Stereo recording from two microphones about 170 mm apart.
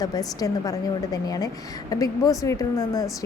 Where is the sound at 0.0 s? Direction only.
20° left (ahead or behind).